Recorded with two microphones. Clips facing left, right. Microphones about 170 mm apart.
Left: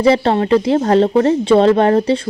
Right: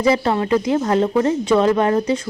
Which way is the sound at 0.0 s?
30° left (ahead or behind).